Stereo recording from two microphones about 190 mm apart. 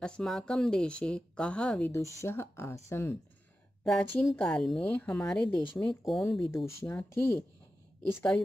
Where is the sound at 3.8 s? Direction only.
Centre (ahead or behind).